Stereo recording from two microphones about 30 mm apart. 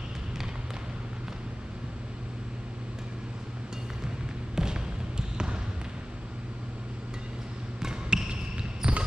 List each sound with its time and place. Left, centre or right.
4.6 s trickle: right
7.9 s basketball bounce: right